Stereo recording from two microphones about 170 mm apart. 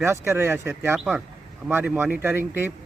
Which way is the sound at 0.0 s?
15° right (ahead or behind).